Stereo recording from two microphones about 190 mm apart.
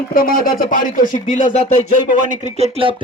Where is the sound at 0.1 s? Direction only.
50° left (ahead or behind).